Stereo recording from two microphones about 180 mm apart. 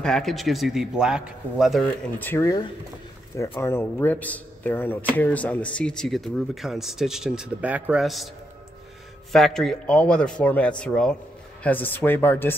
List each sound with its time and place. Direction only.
0.0 s speech: centre (ahead or behind)
2.1 s speech: 10° left (ahead or behind)
9.3 s speech: centre (ahead or behind)